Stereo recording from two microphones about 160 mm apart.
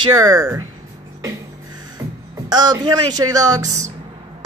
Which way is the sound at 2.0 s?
20° right (ahead or behind).